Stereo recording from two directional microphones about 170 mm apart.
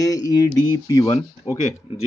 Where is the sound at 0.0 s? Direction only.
20° left (ahead or behind).